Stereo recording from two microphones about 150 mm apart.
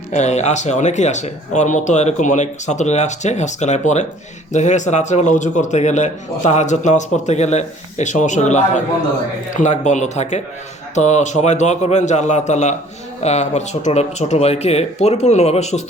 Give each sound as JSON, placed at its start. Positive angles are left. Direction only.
{"t": 0.1, "sound": "speech", "side_deg": 50}